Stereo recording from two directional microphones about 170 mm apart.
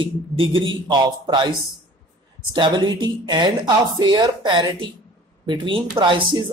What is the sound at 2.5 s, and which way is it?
A man's voice, 25° right (ahead or behind).